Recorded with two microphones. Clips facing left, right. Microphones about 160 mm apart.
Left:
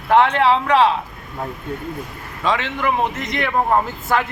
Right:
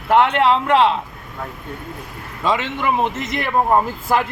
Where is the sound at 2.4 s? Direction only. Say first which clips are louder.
Even; centre (ahead or behind).